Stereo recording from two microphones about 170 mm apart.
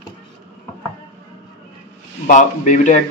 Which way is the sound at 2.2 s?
45° left (ahead or behind).